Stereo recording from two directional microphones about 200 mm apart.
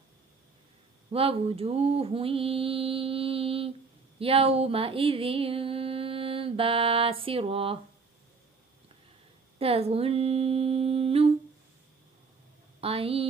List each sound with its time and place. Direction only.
1.1 s mantra: 30° right (ahead or behind)
4.2 s a sound: 30° right (ahead or behind)
9.6 s humming: 30° right (ahead or behind)
12.8 s mantra: 30° right (ahead or behind)